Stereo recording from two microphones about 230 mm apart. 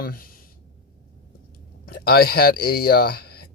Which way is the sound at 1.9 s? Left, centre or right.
Left.